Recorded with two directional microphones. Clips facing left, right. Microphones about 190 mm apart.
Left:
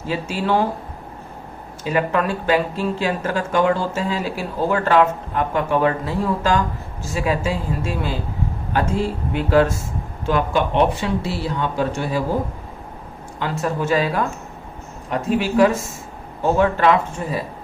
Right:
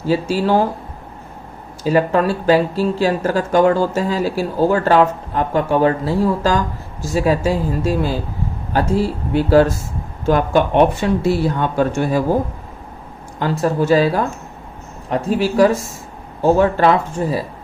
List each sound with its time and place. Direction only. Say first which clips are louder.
0.1 s speech: right 6 dB; 35° right (ahead or behind)
1.8 s speech: right 5 dB; 35° right (ahead or behind)
13.4 s speech: right 5 dB; 35° right (ahead or behind)